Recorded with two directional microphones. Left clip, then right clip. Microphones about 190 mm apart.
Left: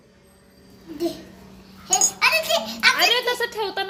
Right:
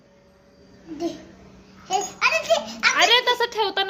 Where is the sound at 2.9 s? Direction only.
10° right (ahead or behind).